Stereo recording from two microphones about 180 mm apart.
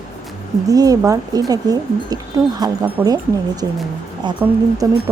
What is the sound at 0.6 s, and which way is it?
A woman's voice, 20° right (ahead or behind).